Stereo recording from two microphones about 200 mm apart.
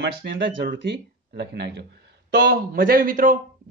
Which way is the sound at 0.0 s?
55° right (ahead or behind).